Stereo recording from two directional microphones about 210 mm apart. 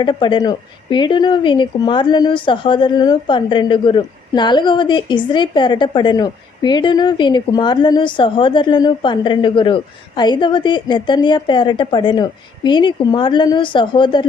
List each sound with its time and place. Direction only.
0.0 s speech: 20° left (ahead or behind)